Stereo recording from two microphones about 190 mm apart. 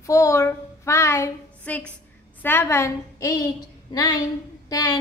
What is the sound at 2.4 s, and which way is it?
A woman's voice, 10° left (ahead or behind).